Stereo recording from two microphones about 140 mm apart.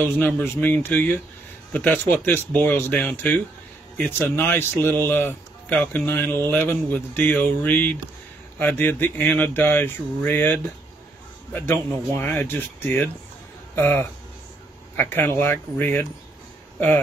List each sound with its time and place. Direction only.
0.4 s speech: 15° left (ahead or behind)